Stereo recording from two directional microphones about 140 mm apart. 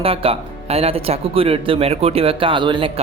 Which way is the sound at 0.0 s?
45° right (ahead or behind).